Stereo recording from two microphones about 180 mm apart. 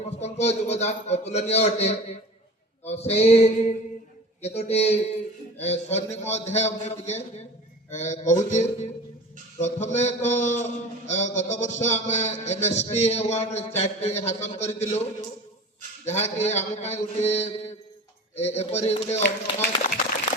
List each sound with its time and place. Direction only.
0.2 s a man's voice: 35° left (ahead or behind)
16.0 s a man's voice: 40° left (ahead or behind)